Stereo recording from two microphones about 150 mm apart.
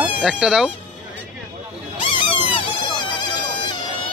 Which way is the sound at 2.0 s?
35° left (ahead or behind).